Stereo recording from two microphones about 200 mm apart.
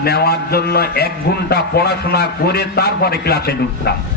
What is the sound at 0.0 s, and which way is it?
A man's voice, 50° left (ahead or behind).